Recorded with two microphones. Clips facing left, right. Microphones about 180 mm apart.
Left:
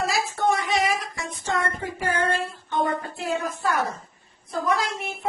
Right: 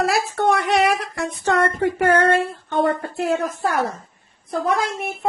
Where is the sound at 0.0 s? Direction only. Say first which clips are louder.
Right 5 dB; 65° right (ahead or behind).